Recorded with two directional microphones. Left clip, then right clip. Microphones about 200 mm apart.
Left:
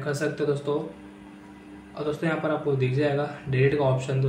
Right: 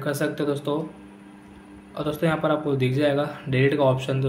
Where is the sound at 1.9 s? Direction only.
35° right (ahead or behind).